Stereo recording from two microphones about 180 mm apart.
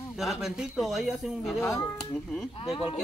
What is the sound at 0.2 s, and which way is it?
A man's voice, centre (ahead or behind).